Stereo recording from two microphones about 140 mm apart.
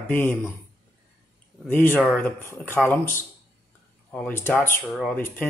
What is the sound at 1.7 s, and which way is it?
Speech, 15° left (ahead or behind).